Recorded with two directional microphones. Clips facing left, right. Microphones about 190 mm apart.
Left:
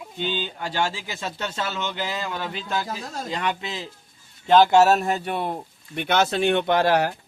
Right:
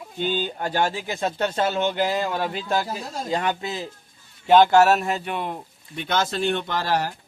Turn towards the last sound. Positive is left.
turn(degrees=60)  # may be behind; listen again after turning